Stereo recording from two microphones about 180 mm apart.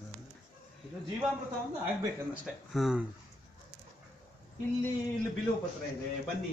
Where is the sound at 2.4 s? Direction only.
5° right (ahead or behind).